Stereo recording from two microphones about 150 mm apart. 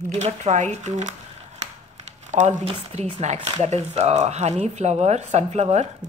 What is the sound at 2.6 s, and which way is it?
Speech, 50° right (ahead or behind).